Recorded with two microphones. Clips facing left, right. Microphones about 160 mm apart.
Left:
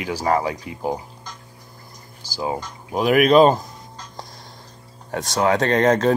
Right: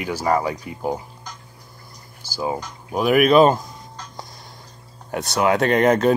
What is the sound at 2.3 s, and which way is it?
Speech, 15° left (ahead or behind).